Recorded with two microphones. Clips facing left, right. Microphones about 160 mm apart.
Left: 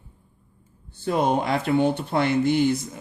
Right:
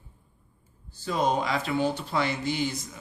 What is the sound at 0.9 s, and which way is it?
Speech, 55° left (ahead or behind).